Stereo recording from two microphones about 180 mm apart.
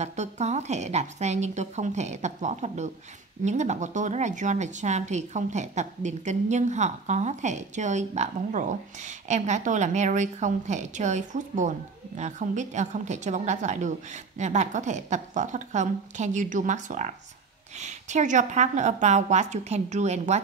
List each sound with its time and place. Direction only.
0.0 s a woman's voice: 40° right (ahead or behind)